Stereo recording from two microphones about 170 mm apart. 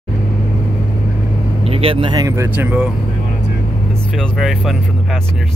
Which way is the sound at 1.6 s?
35° right (ahead or behind).